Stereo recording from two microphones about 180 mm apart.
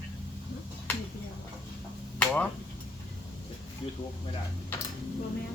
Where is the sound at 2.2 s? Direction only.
5° left (ahead or behind).